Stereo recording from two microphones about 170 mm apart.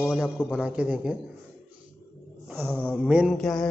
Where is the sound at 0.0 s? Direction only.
5° right (ahead or behind).